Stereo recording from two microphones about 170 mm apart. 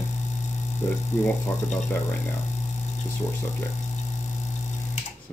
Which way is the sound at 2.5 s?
45° left (ahead or behind).